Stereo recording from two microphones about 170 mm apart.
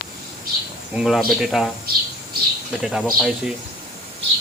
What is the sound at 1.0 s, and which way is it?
Speech, centre (ahead or behind).